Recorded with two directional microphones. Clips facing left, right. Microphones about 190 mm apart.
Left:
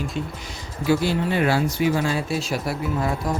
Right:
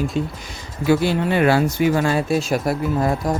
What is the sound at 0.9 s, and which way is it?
Speech, 60° right (ahead or behind).